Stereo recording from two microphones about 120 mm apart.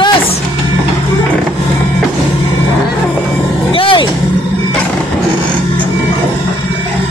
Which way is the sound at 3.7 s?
45° left (ahead or behind).